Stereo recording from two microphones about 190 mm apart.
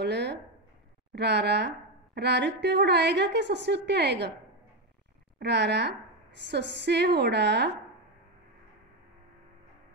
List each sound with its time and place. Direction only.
0.0 s a woman's voice: 60° right (ahead or behind)
5.4 s a woman's voice: 65° right (ahead or behind)